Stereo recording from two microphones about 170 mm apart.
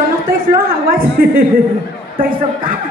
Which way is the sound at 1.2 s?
60° right (ahead or behind).